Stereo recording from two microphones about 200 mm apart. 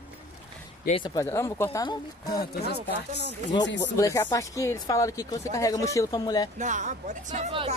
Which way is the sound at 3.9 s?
15° left (ahead or behind).